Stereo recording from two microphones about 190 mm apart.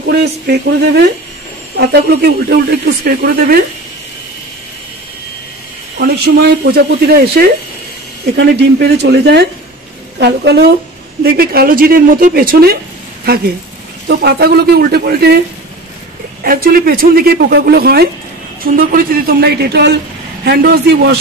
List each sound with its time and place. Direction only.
0.0 s speech: 60° right (ahead or behind)
5.9 s speech: 55° right (ahead or behind)
14.0 s speech: 60° right (ahead or behind)
16.4 s speech: 50° right (ahead or behind)